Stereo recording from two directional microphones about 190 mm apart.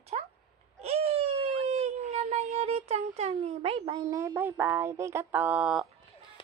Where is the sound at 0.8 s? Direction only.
30° right (ahead or behind).